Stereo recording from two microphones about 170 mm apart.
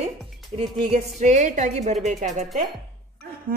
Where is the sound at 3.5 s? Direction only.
55° right (ahead or behind).